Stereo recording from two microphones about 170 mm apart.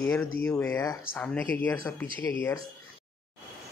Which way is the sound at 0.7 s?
20° left (ahead or behind).